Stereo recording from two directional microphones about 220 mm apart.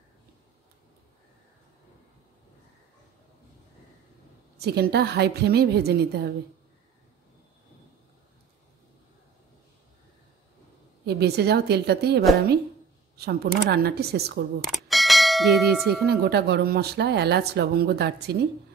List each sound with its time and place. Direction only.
4.6 s speech: 45° right (ahead or behind)
11.1 s speech: 45° right (ahead or behind)
14.6 s clang: centre (ahead or behind)
16.1 s speech: 45° right (ahead or behind)